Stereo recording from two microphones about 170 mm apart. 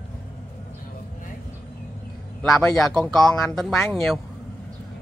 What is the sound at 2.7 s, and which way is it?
A man's voice, centre (ahead or behind).